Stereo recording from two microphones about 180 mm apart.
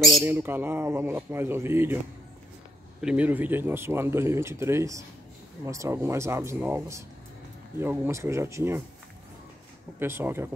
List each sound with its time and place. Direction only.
0.2 s speech: 10° right (ahead or behind)
3.0 s speech: 5° right (ahead or behind)
9.9 s speech: 15° right (ahead or behind)